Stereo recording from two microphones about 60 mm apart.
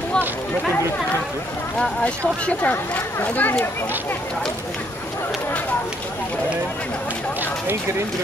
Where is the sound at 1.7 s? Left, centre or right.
Centre.